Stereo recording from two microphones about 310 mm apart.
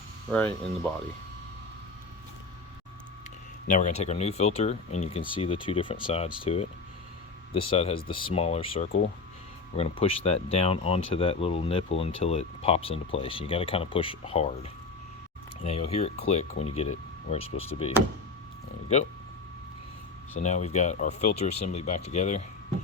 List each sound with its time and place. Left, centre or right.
0.3 s speech: centre
3.7 s speech: left
20.4 s speech: left